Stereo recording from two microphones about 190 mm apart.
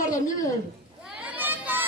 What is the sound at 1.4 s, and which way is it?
Chatter, 10° right (ahead or behind).